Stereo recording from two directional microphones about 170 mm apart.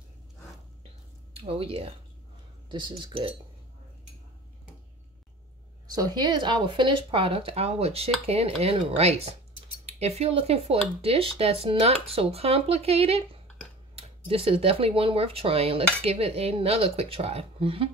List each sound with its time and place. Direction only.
1.3 s speech: 35° right (ahead or behind)
5.9 s speech: 25° right (ahead or behind)